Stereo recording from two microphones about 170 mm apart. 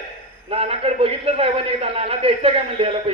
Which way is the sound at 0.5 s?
35° right (ahead or behind).